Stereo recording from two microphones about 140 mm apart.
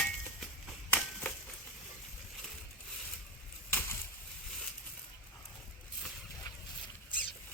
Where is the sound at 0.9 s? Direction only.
10° left (ahead or behind).